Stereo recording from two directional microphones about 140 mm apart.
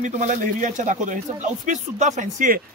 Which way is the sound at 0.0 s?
65° right (ahead or behind).